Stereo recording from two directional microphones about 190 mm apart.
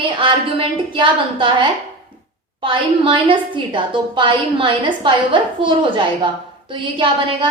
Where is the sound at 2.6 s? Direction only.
25° right (ahead or behind).